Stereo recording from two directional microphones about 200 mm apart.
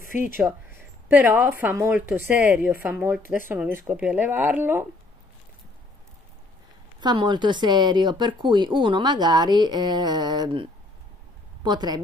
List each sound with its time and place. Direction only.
0.1 s a woman's voice: 5° right (ahead or behind)
7.0 s speech: 20° right (ahead or behind)